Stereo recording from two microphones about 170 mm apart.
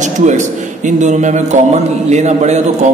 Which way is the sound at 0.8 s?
45° right (ahead or behind).